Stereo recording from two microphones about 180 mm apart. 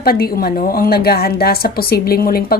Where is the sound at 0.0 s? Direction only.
55° left (ahead or behind).